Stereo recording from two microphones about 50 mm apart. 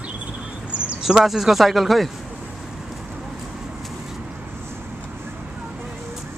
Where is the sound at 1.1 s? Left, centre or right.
Centre.